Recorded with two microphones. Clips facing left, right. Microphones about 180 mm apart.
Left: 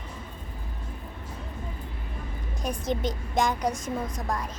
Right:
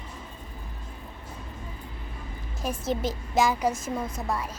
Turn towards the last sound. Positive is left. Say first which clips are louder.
# right 1 dB
turn(degrees=-5)  # may be behind; listen again after turning